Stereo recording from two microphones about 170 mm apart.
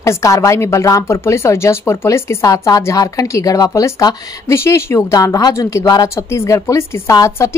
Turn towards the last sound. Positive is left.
turn(degrees=15)  # may be behind; listen again after turning